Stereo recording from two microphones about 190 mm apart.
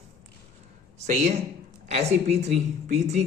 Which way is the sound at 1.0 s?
35° right (ahead or behind).